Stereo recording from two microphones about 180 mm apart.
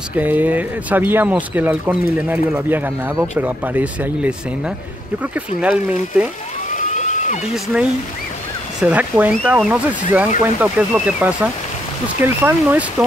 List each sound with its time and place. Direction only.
0.1 s speech: 10° right (ahead or behind)
6.9 s a sound: 40° left (ahead or behind)
7.5 s speech: centre (ahead or behind)
8.8 s speech: 10° right (ahead or behind)